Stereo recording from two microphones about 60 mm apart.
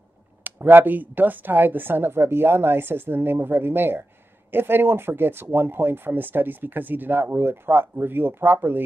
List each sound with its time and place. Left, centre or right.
0.4 s speech: right